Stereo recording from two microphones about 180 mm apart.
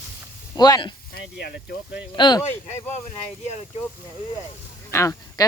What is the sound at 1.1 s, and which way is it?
Speech, 65° left (ahead or behind).